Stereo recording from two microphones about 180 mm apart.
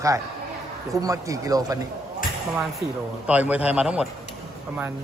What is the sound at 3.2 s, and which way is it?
Speech, 10° right (ahead or behind).